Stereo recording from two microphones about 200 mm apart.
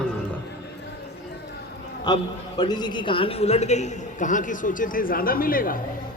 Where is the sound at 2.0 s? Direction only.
20° left (ahead or behind).